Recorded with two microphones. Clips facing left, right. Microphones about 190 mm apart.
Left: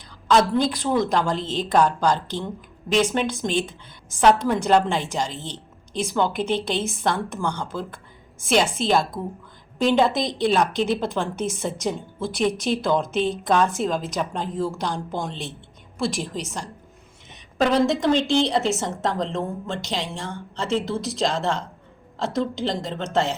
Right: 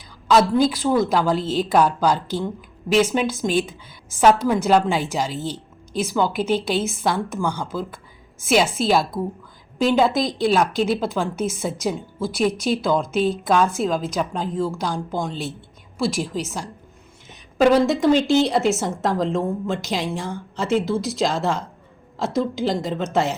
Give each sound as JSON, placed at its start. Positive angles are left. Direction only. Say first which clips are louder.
{"t": 0.3, "sound": "a woman's voice", "louder": "right 2 dB", "side_deg": -5}